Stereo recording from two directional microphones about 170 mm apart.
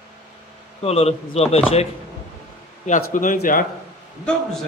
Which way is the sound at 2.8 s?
50° left (ahead or behind).